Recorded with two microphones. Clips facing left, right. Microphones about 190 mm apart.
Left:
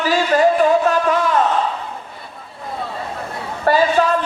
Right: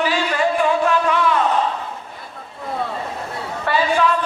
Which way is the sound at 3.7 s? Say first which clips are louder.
Left 5 dB; 40° left (ahead or behind).